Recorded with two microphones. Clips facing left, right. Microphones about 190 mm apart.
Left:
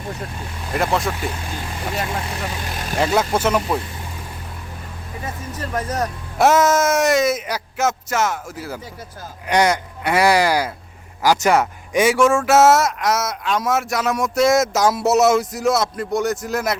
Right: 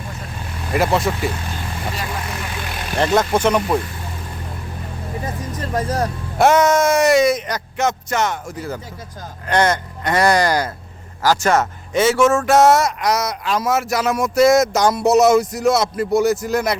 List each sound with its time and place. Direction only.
0.7 s speech: centre (ahead or behind)
3.0 s speech: 5° left (ahead or behind)
5.5 s speech: 30° right (ahead or behind)
6.4 s speech: centre (ahead or behind)